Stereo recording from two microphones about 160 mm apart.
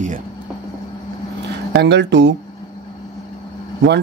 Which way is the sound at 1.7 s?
90° right.